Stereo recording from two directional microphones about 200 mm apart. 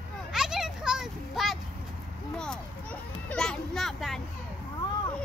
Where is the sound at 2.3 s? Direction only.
5° left (ahead or behind).